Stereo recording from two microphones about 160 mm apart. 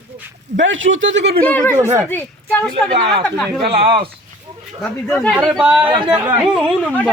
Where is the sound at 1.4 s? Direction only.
10° left (ahead or behind).